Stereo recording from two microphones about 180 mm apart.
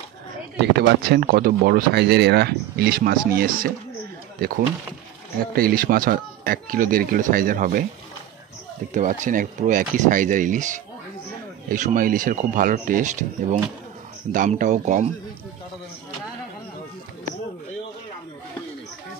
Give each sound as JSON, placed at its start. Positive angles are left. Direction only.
{"t": 0.7, "sound": "speech", "side_deg": -65}
{"t": 8.9, "sound": "speech", "side_deg": -45}